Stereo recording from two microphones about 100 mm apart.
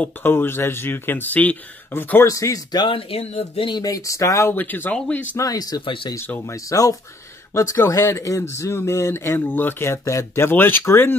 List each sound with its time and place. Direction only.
0.0 s speech: 20° left (ahead or behind)
2.2 s speech: 35° left (ahead or behind)
3.0 s speech: 80° left
3.6 s speech: 40° left (ahead or behind)
4.6 s speech: 20° left (ahead or behind)
5.4 s speech: 40° left (ahead or behind)
6.1 s speech: 25° left (ahead or behind)
6.5 s speech: 35° left (ahead or behind)